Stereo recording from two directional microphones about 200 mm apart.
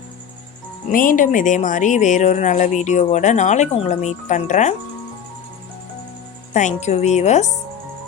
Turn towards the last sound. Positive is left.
turn(degrees=35)  # may be behind; listen again after turning